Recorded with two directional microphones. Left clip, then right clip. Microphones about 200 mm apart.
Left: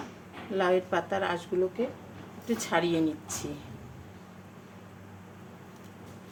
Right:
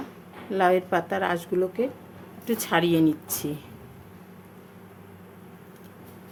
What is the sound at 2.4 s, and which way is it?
Speech, 40° right (ahead or behind).